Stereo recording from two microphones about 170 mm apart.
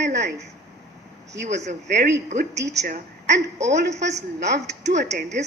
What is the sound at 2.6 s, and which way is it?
A man's voice, 90° right.